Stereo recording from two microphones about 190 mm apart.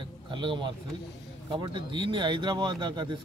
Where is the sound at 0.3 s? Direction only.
25° right (ahead or behind).